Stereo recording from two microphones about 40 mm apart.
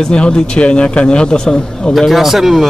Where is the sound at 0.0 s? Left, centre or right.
Left.